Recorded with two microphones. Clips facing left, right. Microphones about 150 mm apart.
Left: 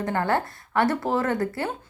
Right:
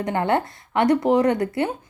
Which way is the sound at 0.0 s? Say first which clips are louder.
Right 3 dB; 20° right (ahead or behind).